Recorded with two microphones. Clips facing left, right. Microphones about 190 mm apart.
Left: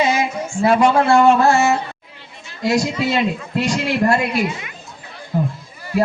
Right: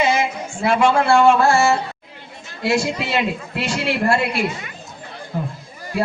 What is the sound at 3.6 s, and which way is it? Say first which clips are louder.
Speech: left 3 dB; 40° left (ahead or behind).